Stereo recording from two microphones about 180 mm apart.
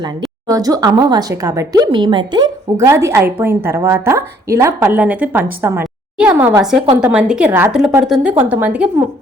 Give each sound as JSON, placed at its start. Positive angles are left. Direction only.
{"t": 0.4, "sound": "speech", "side_deg": -20}